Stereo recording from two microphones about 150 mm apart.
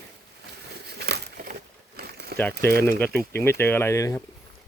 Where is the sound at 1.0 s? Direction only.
90° right.